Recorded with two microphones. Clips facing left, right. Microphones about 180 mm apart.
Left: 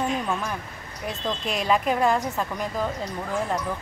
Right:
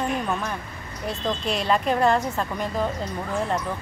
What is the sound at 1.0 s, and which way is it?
A woman's voice, centre (ahead or behind).